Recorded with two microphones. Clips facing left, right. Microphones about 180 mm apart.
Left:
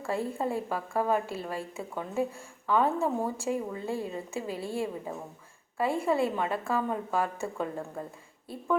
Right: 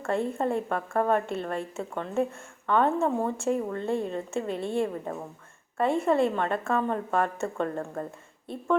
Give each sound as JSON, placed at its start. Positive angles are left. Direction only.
{"t": 0.1, "sound": "a woman's voice", "side_deg": 5}